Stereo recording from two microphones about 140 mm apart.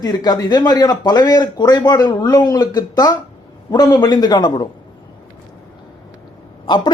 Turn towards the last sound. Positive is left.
turn(degrees=35)  # may be behind; listen again after turning